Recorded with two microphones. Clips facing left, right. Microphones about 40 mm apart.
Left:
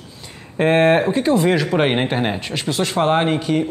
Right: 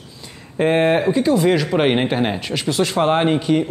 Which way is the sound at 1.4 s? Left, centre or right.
Centre.